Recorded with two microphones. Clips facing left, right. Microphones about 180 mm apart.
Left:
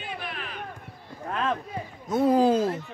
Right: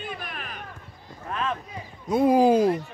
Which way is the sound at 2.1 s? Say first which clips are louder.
Right 2 dB; 10° right (ahead or behind).